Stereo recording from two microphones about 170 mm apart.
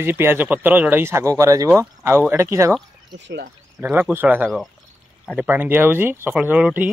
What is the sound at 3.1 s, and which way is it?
Speech, 90° right.